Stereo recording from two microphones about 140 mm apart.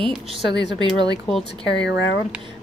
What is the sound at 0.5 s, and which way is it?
Speech, 35° right (ahead or behind).